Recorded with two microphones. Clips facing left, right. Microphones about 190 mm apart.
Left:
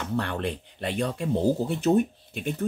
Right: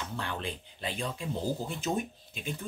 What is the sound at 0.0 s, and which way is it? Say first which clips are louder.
Speech: left 8 dB; 65° left (ahead or behind).